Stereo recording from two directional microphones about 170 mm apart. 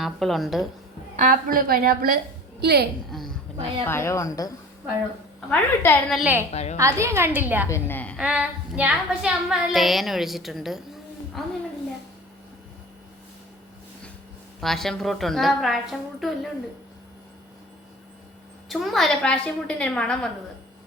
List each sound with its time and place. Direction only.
0.0 s a woman's voice: centre (ahead or behind)
1.1 s a woman's voice: 50° right (ahead or behind); by 2.8 s 70° right (ahead or behind)
3.8 s a woman's voice: 15° left (ahead or behind)
6.1 s a woman's voice: centre (ahead or behind)
6.5 s a woman's voice: 40° left (ahead or behind)
6.7 s a woman's voice: 15° right (ahead or behind)
7.7 s a woman's voice: 10° left (ahead or behind)
8.2 s a woman's voice: 5° right (ahead or behind)
14.6 s a woman's voice: centre (ahead or behind)
18.7 s a woman's voice: centre (ahead or behind)